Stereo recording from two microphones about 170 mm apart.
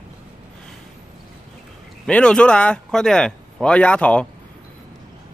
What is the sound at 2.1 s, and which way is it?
Speech, 5° left (ahead or behind).